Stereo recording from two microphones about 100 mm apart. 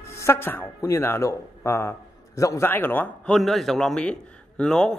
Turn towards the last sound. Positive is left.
turn(degrees=5)  # may be behind; listen again after turning